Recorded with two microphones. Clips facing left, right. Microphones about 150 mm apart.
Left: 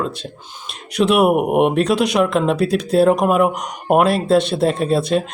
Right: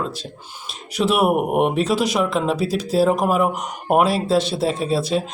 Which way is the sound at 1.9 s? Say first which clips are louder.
Left 3 dB; 65° left (ahead or behind).